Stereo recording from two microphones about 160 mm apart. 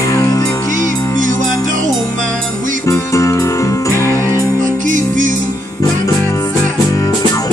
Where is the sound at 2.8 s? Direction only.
20° left (ahead or behind).